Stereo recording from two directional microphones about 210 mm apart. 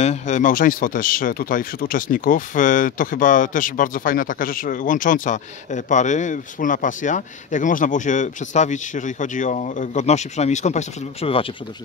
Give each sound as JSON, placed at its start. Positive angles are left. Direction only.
{"t": 0.0, "sound": "speech", "side_deg": 35}